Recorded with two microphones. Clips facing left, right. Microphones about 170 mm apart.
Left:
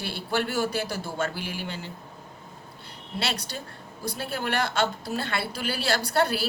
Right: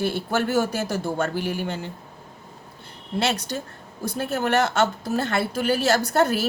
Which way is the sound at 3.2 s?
45° right (ahead or behind).